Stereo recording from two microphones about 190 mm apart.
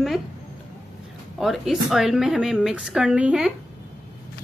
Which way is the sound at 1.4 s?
Centre (ahead or behind).